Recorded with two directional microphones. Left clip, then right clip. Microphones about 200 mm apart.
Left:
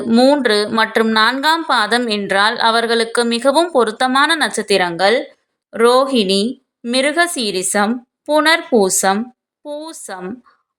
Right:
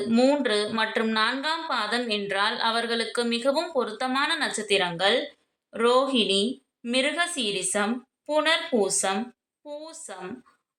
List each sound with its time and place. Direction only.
0.1 s a woman's voice: 35° left (ahead or behind)